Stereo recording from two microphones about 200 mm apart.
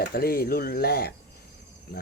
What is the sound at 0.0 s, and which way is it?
Speech, 50° left (ahead or behind).